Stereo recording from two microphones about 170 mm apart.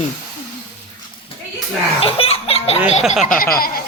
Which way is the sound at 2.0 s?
35° left (ahead or behind).